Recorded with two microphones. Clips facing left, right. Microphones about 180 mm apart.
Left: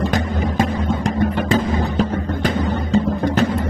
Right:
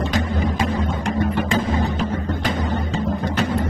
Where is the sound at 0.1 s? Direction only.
45° left (ahead or behind).